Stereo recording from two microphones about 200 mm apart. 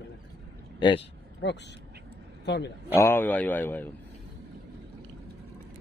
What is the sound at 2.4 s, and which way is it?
Speech, 60° left (ahead or behind).